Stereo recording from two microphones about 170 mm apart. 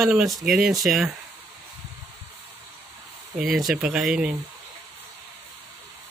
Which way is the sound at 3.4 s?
Centre (ahead or behind).